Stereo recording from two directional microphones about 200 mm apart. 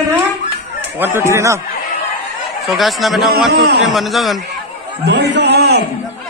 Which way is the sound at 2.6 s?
Centre (ahead or behind).